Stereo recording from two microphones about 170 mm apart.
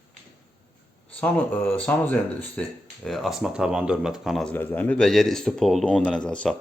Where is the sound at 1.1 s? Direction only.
10° left (ahead or behind).